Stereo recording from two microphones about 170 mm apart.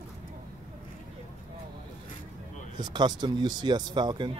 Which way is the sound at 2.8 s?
25° right (ahead or behind).